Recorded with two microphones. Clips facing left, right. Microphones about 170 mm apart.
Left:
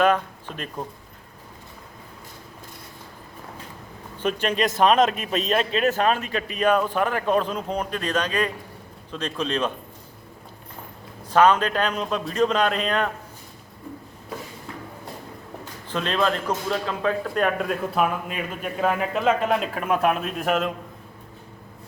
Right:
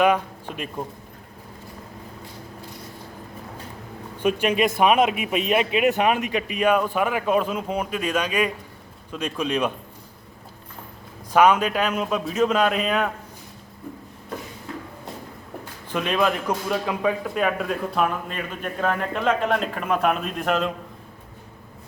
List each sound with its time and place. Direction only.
0.0 s speech: 10° right (ahead or behind)
4.2 s a man's voice: 10° right (ahead or behind)
11.3 s a man's voice: 10° right (ahead or behind)
15.9 s a man's voice: 10° right (ahead or behind)
17.4 s a man's voice: centre (ahead or behind)